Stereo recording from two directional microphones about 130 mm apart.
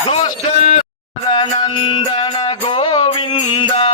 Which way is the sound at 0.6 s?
60° left (ahead or behind).